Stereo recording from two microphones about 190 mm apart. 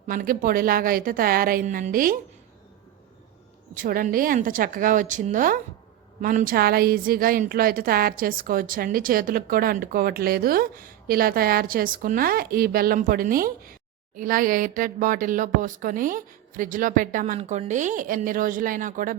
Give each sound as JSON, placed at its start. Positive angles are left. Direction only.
{"t": 0.1, "sound": "a woman's voice", "side_deg": -50}
{"t": 3.8, "sound": "a woman's voice", "side_deg": -45}